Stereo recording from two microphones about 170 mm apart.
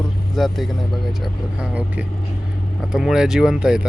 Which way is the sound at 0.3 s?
Centre (ahead or behind).